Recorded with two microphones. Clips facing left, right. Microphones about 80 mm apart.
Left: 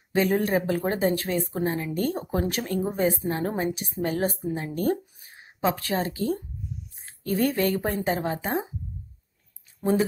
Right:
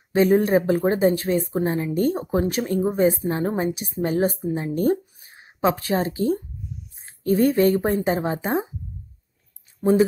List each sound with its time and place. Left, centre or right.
0.1 s speech: centre
9.8 s speech: centre